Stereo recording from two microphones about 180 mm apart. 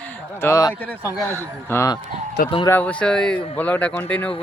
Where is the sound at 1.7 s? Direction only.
15° left (ahead or behind).